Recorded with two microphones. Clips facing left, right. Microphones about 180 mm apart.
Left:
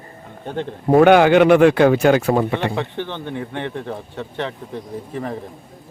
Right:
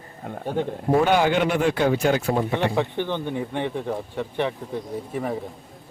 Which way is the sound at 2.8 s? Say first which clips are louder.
Right 1 dB; 15° right (ahead or behind).